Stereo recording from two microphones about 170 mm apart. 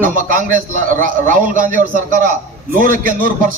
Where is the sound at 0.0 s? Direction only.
55° right (ahead or behind).